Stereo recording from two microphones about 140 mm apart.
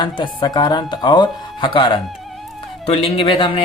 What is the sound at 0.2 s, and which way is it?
Speech, 30° left (ahead or behind).